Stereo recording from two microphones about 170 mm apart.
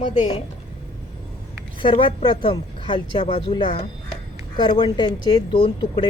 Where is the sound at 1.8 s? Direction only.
30° left (ahead or behind).